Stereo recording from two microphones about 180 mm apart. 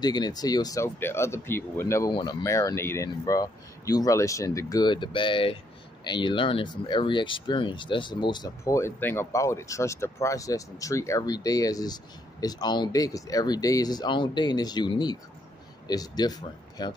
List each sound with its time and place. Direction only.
0.0 s speech: 20° left (ahead or behind)